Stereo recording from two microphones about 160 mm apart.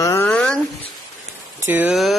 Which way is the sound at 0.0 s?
20° left (ahead or behind).